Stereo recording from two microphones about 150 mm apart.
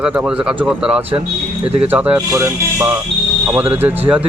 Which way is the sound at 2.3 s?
20° right (ahead or behind).